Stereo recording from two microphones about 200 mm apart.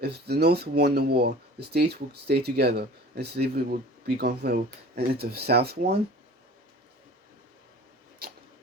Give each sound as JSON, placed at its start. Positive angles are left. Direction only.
{"t": 0.0, "sound": "speech", "side_deg": -55}